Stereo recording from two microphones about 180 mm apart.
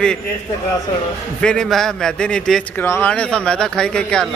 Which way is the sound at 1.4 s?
5° left (ahead or behind).